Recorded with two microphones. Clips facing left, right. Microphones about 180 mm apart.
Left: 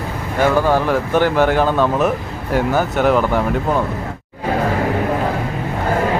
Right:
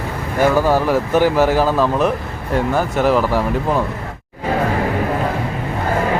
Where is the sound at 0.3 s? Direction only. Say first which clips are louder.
Even; 10° right (ahead or behind).